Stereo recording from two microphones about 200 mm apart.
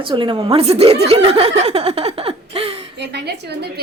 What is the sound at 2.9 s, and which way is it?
Speech, 55° right (ahead or behind).